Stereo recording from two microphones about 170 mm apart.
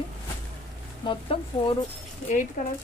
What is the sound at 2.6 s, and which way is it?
Speech, 50° left (ahead or behind).